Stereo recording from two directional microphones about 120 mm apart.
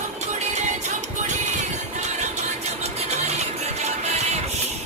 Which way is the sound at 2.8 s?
65° right (ahead or behind).